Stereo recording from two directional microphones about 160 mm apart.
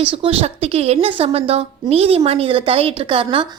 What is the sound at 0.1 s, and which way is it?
A woman's voice, 35° right (ahead or behind).